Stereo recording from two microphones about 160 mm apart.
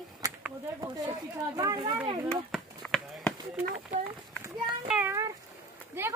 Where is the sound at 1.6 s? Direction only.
20° right (ahead or behind).